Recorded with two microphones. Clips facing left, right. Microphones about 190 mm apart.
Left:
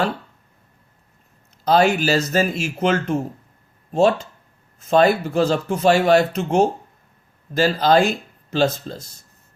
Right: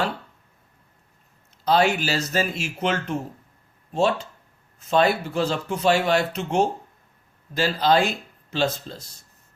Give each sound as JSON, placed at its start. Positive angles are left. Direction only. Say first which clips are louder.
{"t": 1.6, "sound": "speech", "louder": "left 4 dB", "side_deg": 45}